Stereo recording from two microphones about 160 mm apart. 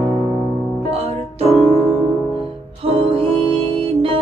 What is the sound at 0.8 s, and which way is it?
Music, 40° right (ahead or behind).